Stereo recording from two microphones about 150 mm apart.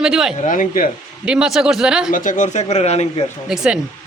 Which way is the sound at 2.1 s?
60° left (ahead or behind).